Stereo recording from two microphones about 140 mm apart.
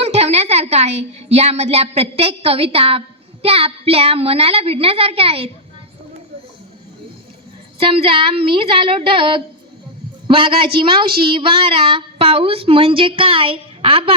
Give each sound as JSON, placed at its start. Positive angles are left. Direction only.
{"t": 0.0, "sound": "a woman's voice", "side_deg": -50}
{"t": 7.8, "sound": "speech", "side_deg": -40}